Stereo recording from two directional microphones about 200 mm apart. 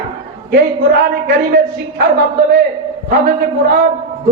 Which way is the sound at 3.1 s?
60° right (ahead or behind).